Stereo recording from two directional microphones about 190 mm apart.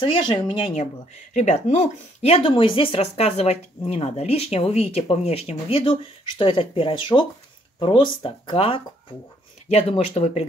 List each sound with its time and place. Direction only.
0.0 s speech: 25° left (ahead or behind)